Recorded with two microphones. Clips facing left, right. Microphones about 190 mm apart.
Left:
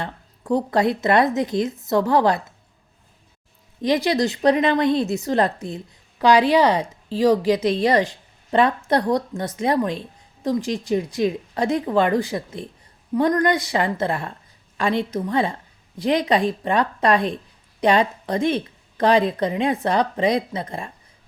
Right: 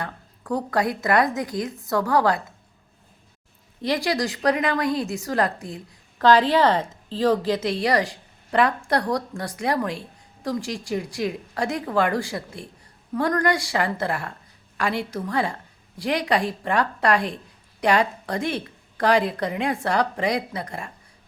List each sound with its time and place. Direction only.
0.0 s a woman's voice: 25° left (ahead or behind)
3.8 s a woman's voice: 20° left (ahead or behind)